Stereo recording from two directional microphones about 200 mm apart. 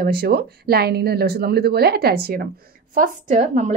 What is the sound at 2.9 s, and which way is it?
Speech, 40° right (ahead or behind).